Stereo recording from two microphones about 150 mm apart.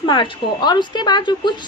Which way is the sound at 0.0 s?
30° left (ahead or behind).